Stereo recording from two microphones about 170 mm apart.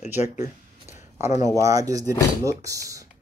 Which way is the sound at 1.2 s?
15° right (ahead or behind).